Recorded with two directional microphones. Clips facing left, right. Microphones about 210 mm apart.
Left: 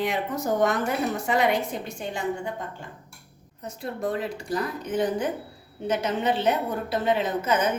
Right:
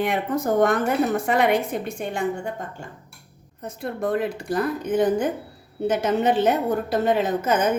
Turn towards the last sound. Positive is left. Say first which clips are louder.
# right 3 dB
turn(degrees=-50)  # may be behind; listen again after turning